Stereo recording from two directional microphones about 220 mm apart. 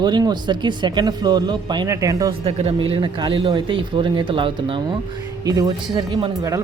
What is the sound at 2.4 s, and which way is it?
Speech, 25° right (ahead or behind).